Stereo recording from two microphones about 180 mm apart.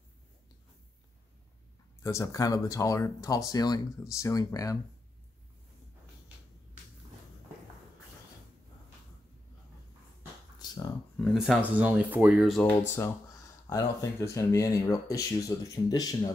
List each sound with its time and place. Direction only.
2.0 s speech: 15° left (ahead or behind)
10.6 s a sound: 20° left (ahead or behind)
11.1 s speech: centre (ahead or behind)
13.7 s speech: 15° left (ahead or behind)